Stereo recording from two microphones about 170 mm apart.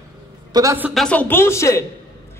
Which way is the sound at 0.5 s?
20° right (ahead or behind).